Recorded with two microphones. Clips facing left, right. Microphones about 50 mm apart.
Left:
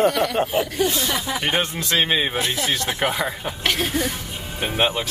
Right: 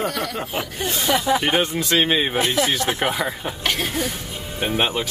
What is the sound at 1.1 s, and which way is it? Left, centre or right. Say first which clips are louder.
Speech: right 6 dB; right.